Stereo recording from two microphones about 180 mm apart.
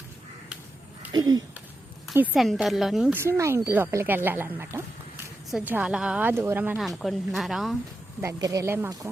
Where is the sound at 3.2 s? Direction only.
15° right (ahead or behind).